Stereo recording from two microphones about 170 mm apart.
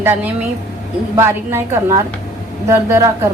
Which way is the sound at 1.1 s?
15° right (ahead or behind).